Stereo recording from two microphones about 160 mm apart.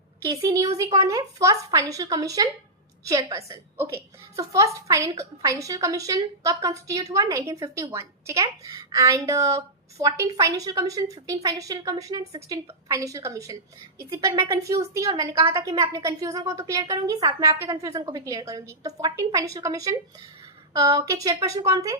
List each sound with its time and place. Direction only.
0.3 s a woman's voice: 20° right (ahead or behind)
15.5 s a woman's voice: 20° right (ahead or behind)